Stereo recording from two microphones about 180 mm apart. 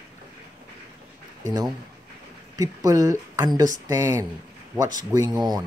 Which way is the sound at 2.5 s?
20° right (ahead or behind).